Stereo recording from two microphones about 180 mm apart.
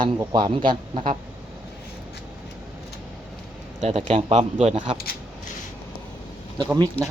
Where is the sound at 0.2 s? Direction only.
25° right (ahead or behind).